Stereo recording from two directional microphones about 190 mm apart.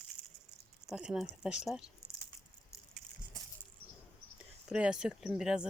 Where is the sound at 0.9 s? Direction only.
5° right (ahead or behind).